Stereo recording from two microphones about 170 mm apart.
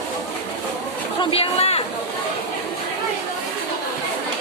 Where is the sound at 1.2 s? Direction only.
35° left (ahead or behind).